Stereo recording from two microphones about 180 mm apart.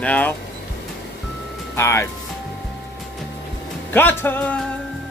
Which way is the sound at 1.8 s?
15° left (ahead or behind).